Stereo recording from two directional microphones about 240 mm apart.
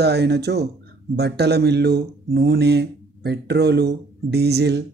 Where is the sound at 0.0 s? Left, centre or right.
Right.